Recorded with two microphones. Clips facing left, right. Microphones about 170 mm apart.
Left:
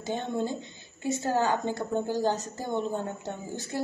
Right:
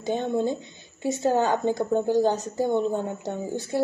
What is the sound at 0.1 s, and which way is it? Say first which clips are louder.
Speech: right 5 dB; 15° right (ahead or behind).